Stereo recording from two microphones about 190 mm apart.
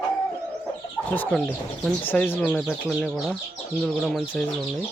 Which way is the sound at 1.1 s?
10° left (ahead or behind).